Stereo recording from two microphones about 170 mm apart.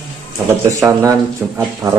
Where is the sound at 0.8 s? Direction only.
20° right (ahead or behind).